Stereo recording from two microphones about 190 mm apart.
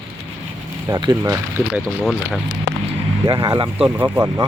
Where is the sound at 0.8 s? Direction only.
20° right (ahead or behind).